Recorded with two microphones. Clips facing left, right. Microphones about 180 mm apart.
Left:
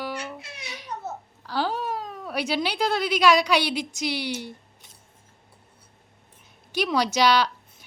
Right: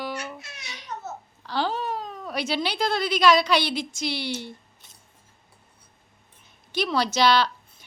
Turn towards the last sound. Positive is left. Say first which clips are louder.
# even
turn(degrees=10)  # may be behind; listen again after turning